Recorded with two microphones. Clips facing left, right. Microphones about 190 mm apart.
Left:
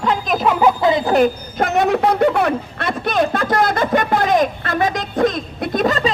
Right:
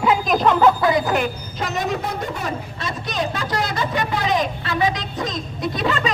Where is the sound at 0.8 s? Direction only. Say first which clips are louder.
Left 2 dB; 25° left (ahead or behind).